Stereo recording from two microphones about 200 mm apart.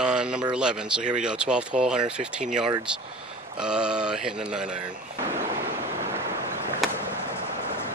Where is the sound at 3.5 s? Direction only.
5° right (ahead or behind).